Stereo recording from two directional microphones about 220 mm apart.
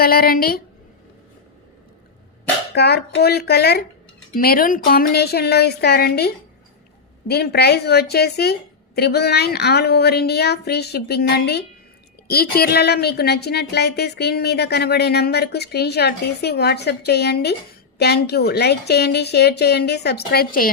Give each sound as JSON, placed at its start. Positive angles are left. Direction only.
{"t": 0.0, "sound": "speech", "side_deg": 45}
{"t": 2.7, "sound": "speech", "side_deg": 50}